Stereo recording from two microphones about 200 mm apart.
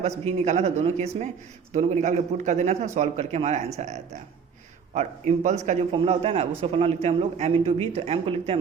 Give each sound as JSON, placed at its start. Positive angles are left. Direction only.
{"t": 0.3, "sound": "a man's voice", "side_deg": -35}